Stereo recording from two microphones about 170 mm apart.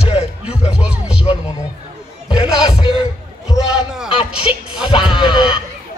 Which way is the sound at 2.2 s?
30° left (ahead or behind).